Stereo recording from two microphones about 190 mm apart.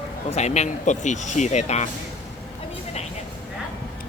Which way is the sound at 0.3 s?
35° left (ahead or behind).